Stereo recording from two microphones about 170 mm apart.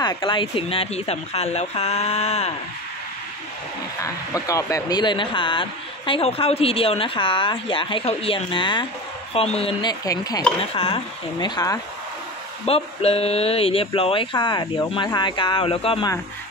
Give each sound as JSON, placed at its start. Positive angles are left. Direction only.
{"t": 0.0, "sound": "speech", "side_deg": 25}
{"t": 4.0, "sound": "speech", "side_deg": 20}
{"t": 10.6, "sound": "speech", "side_deg": 35}
{"t": 12.6, "sound": "speech", "side_deg": 35}